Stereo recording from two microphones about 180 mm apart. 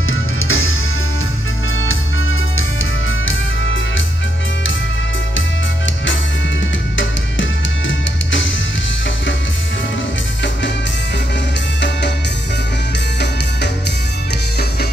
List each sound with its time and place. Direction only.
0.4 s music: 90° left
2.5 s music: 90° left